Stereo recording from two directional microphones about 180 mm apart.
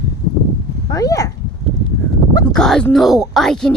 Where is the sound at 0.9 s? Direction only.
20° left (ahead or behind).